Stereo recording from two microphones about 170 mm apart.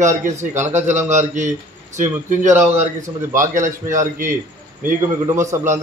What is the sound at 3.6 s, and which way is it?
Speech, 50° right (ahead or behind).